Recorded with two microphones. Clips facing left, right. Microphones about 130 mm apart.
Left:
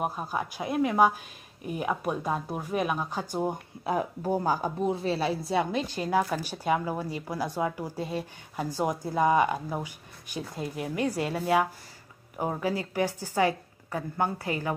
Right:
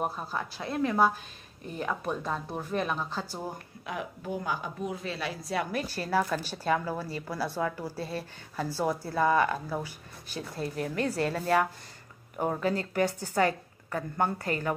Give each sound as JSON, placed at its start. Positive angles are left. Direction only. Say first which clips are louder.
{"t": 0.0, "sound": "a woman's voice", "louder": "left 2 dB", "side_deg": 10}
{"t": 3.8, "sound": "a woman's voice", "louder": "left 8 dB", "side_deg": 35}